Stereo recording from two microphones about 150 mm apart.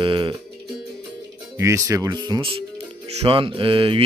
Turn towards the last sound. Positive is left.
turn(degrees=-35)  # may be behind; listen again after turning